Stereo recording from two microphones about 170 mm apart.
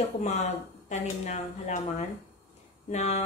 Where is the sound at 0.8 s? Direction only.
45° left (ahead or behind).